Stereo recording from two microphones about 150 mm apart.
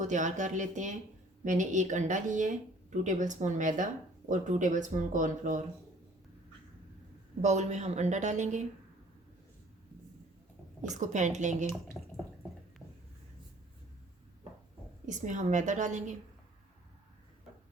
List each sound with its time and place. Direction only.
0.0 s speech: 55° right (ahead or behind)
7.4 s a woman's voice: 50° right (ahead or behind)
10.8 s a woman's voice: 55° right (ahead or behind)
15.0 s speech: 55° right (ahead or behind)